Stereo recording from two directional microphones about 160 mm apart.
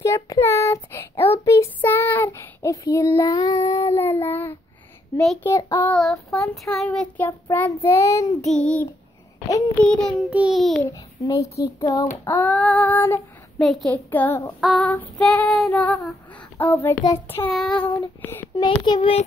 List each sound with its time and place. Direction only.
0.0 s child singing: 20° left (ahead or behind)
5.4 s a child's voice: 20° left (ahead or behind)
5.9 s child singing: 5° left (ahead or behind)
7.5 s a child's voice: 15° left (ahead or behind)
8.5 s child singing: 5° left (ahead or behind)
10.8 s a child's voice: 20° left (ahead or behind)
12.3 s female singing: 15° left (ahead or behind)
13.6 s child singing: centre (ahead or behind)
14.1 s female singing: 15° left (ahead or behind)
14.6 s child singing: 5° left (ahead or behind)
16.5 s a child's voice: 10° left (ahead or behind)
17.5 s child singing: centre (ahead or behind)
18.2 s female singing: 15° left (ahead or behind)
18.6 s a child's voice: 30° left (ahead or behind)